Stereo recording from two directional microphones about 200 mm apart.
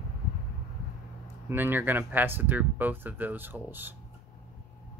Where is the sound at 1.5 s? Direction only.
10° right (ahead or behind).